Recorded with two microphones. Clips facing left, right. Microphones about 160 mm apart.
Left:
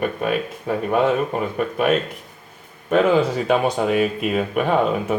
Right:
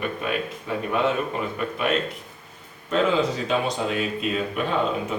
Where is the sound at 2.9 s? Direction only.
60° left (ahead or behind).